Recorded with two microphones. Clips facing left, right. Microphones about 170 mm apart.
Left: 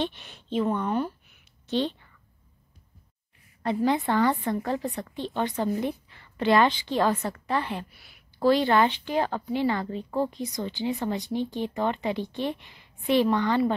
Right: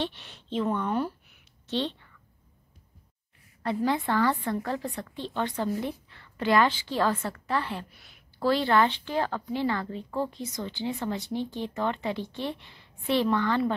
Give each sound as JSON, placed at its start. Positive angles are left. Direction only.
{"t": 0.0, "sound": "a woman's voice", "side_deg": 15}
{"t": 0.7, "sound": "speech", "side_deg": 0}
{"t": 1.7, "sound": "speech", "side_deg": 10}
{"t": 3.6, "sound": "a woman's voice", "side_deg": 20}
{"t": 7.9, "sound": "a woman's voice", "side_deg": 5}
{"t": 8.4, "sound": "speech", "side_deg": 15}